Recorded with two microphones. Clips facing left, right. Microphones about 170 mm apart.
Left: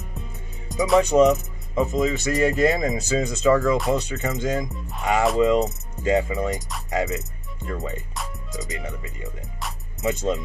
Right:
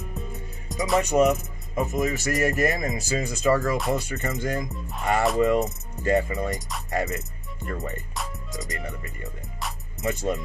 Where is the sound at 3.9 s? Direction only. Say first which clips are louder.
Left 3 dB; 15° left (ahead or behind).